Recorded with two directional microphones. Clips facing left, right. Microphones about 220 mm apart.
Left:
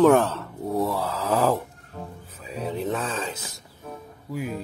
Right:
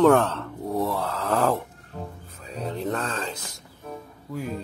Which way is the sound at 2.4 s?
5° left (ahead or behind).